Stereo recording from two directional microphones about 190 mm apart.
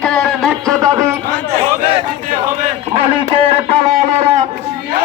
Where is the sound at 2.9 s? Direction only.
30° right (ahead or behind).